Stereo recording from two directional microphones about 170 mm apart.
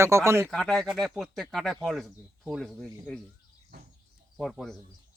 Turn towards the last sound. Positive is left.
turn(degrees=0)  # may be behind; listen again after turning